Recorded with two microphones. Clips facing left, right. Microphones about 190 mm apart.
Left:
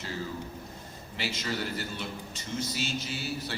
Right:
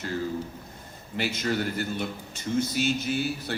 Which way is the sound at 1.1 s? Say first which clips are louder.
Right 6 dB; 50° right (ahead or behind).